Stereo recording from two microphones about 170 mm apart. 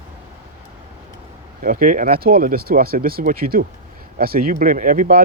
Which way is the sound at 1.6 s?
55° right (ahead or behind).